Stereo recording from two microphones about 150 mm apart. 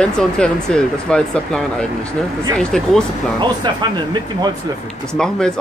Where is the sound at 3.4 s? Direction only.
30° right (ahead or behind).